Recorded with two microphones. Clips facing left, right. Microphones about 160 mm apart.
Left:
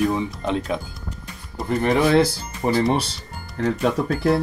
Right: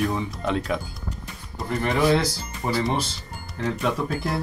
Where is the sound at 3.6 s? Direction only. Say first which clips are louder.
Left 5 dB; 50° left (ahead or behind).